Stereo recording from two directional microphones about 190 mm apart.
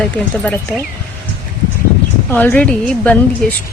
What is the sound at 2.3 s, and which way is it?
Speech, 10° left (ahead or behind).